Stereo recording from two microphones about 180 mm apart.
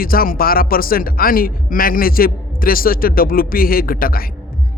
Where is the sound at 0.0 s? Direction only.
55° left (ahead or behind).